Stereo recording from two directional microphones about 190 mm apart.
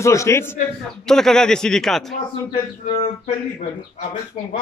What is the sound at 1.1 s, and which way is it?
Speech, 5° left (ahead or behind).